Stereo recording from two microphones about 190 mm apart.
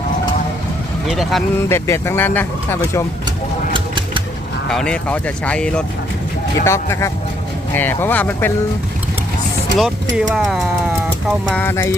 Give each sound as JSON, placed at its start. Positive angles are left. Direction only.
{"t": 1.0, "sound": "speech", "side_deg": 0}
{"t": 1.7, "sound": "speech", "side_deg": 15}
{"t": 3.7, "sound": "a sound", "side_deg": -25}
{"t": 4.7, "sound": "speech", "side_deg": 5}
{"t": 9.7, "sound": "speech", "side_deg": -60}
{"t": 10.2, "sound": "speech", "side_deg": 0}